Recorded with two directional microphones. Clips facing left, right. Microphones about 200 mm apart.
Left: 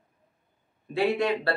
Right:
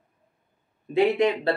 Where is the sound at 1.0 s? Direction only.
20° right (ahead or behind).